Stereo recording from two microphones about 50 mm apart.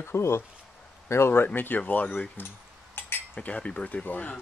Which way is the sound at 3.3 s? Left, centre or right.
Left.